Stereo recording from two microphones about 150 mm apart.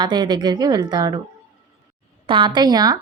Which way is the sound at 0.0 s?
30° right (ahead or behind).